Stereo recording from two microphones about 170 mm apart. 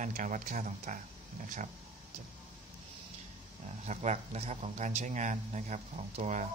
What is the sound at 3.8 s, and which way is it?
Speech, 40° right (ahead or behind).